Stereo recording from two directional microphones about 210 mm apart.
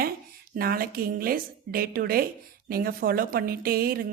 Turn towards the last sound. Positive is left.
turn(degrees=-45)  # may be behind; listen again after turning